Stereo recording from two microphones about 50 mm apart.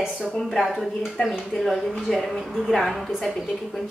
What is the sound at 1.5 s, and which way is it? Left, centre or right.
A woman's voice, centre.